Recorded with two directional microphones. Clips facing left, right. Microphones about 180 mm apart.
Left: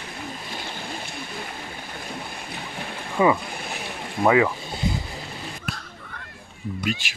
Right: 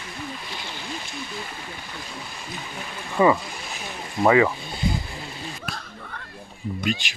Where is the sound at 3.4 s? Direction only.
60° left (ahead or behind).